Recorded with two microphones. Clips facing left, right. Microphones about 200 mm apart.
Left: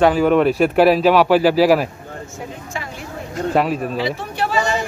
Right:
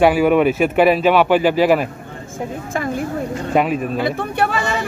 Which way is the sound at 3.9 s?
55° right (ahead or behind).